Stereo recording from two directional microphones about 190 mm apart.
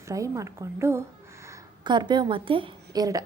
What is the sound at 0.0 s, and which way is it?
A woman's voice, 15° right (ahead or behind).